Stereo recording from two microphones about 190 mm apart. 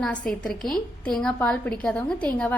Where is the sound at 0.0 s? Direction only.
5° left (ahead or behind).